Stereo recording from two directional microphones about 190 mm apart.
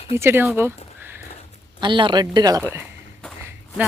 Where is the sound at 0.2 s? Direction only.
15° right (ahead or behind).